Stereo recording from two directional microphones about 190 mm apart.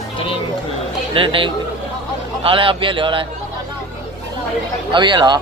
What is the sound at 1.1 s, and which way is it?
A man's voice, 25° right (ahead or behind).